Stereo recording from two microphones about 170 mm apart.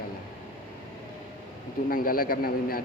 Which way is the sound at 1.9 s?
55° left (ahead or behind).